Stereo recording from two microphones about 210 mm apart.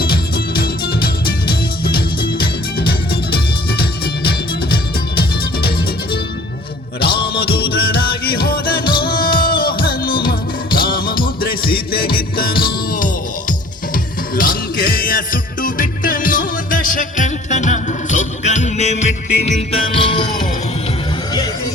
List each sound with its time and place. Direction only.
0.0 s music: 45° left (ahead or behind)
7.0 s music: 50° left (ahead or behind)
8.8 s music: 25° left (ahead or behind)
9.6 s music: 45° left (ahead or behind); by 20.2 s 25° left (ahead or behind)